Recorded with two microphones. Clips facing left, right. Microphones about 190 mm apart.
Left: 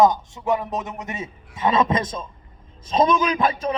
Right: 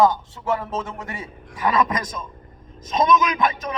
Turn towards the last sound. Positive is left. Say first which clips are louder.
# left 2 dB
turn(degrees=30)  # may be behind; listen again after turning